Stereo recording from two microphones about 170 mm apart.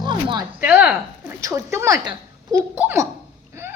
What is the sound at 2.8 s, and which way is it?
Laughter, 10° right (ahead or behind).